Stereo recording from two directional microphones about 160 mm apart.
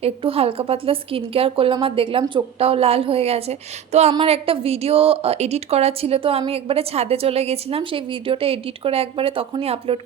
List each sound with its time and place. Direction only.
0.0 s a woman's voice: 35° right (ahead or behind)